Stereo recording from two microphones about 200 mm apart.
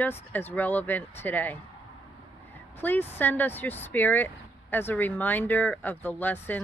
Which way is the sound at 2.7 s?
10° left (ahead or behind).